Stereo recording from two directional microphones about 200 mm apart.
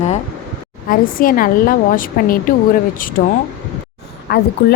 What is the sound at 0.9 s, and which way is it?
A woman's voice, 45° left (ahead or behind).